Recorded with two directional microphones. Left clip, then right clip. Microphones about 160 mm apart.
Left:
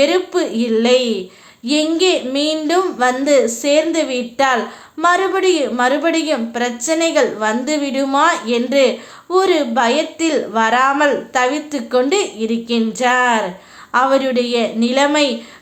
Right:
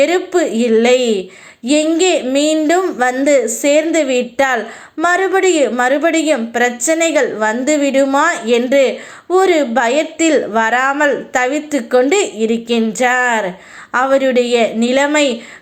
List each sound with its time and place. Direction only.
0.0 s a woman's voice: 25° right (ahead or behind)